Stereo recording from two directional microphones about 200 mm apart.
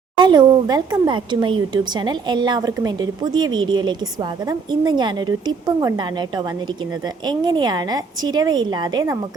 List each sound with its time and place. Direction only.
0.2 s a woman's voice: 20° right (ahead or behind)